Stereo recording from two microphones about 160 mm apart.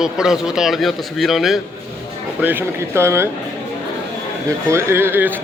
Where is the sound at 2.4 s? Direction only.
10° right (ahead or behind).